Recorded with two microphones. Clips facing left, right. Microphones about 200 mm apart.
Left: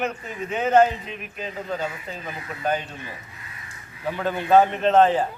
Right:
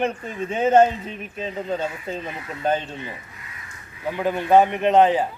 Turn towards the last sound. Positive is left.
turn(degrees=-15)  # may be behind; listen again after turning